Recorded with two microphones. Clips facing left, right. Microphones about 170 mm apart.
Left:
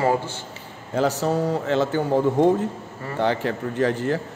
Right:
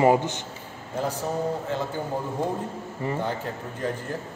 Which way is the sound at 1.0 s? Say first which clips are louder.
Left 6 dB; 90° left.